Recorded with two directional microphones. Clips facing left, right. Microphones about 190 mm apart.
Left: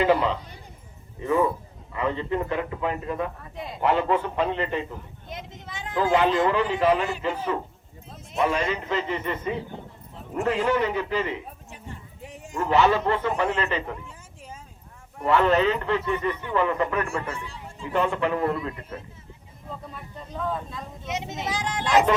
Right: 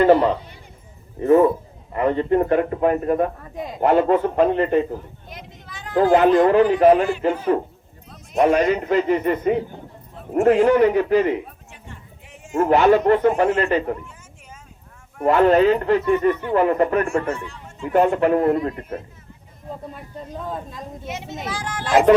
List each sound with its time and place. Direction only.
0.0 s a man's voice: 50° right (ahead or behind)
5.3 s a sound: 25° left (ahead or behind)
5.9 s a man's voice: 45° right (ahead or behind)
12.2 s bow-wow: 35° left (ahead or behind)
12.5 s a man's voice: 50° right (ahead or behind)
15.2 s a man's voice: 45° right (ahead or behind)
21.1 s a child's voice: 20° left (ahead or behind)